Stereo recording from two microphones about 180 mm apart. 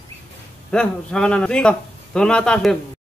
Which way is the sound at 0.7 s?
5° left (ahead or behind).